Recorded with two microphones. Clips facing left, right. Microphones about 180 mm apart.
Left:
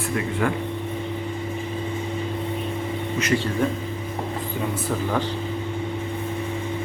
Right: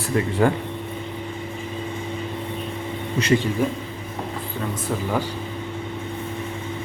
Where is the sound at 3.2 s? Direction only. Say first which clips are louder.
Right 5 dB; 35° right (ahead or behind).